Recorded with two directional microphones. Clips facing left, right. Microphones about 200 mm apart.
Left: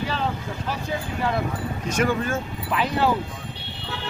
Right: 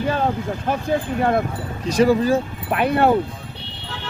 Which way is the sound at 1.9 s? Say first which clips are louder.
Right 8 dB; 35° right (ahead or behind).